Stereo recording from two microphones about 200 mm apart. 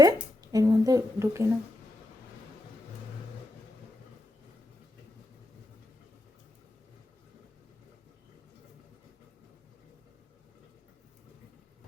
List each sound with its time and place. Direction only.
0.0 s speech: 20° right (ahead or behind)